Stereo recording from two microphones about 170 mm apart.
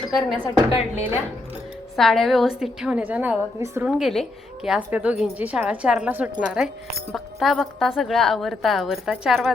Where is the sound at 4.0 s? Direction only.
Centre (ahead or behind).